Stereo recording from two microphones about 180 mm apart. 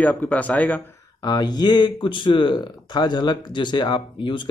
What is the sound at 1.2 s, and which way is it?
Speech, 20° left (ahead or behind).